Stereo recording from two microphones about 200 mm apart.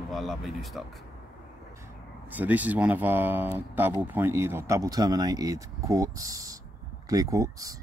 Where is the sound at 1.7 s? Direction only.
10° right (ahead or behind).